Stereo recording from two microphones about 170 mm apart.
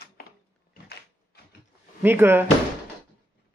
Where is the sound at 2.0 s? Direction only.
10° right (ahead or behind).